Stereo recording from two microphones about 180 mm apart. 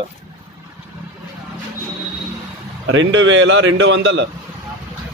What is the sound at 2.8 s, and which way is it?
A man's voice, 90° right.